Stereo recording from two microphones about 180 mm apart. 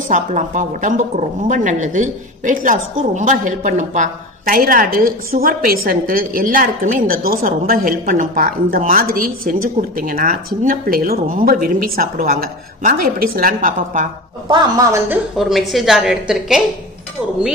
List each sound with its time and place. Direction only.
0.1 s speech: 45° right (ahead or behind)
14.5 s speech: 20° right (ahead or behind)
15.0 s a woman's voice: centre (ahead or behind)